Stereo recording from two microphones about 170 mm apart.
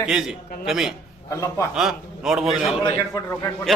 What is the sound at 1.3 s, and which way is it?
Speech, 20° left (ahead or behind).